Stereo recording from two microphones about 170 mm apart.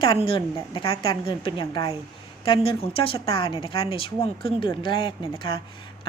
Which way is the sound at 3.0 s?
35° left (ahead or behind).